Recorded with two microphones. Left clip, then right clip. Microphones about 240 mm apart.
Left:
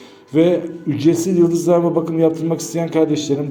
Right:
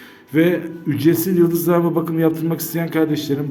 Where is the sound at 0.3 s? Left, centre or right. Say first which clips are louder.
Left 2 dB; centre.